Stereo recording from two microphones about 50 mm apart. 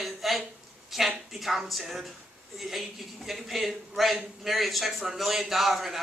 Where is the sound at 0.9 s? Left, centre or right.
Centre.